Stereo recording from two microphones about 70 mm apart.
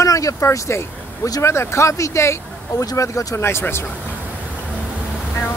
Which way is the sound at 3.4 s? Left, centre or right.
Left.